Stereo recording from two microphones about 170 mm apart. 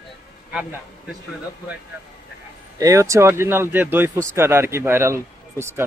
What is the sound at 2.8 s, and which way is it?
Speech, 20° right (ahead or behind).